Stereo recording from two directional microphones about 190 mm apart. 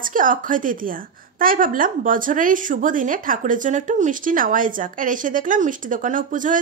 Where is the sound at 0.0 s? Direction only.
45° right (ahead or behind).